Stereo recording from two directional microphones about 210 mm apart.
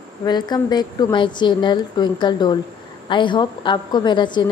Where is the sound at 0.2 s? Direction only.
20° left (ahead or behind).